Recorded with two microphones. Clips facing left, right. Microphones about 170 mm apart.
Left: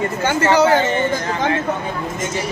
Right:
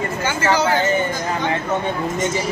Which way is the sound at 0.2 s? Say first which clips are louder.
Left 6 dB; 60° left (ahead or behind).